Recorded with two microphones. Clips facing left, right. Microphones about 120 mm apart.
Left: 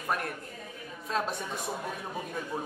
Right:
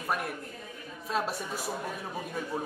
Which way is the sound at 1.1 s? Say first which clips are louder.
Even; 5° right (ahead or behind).